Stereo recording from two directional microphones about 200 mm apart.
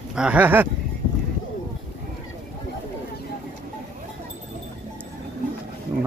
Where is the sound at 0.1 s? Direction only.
5° right (ahead or behind).